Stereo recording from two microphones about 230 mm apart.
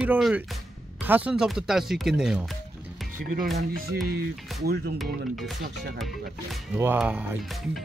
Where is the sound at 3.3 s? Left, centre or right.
Right.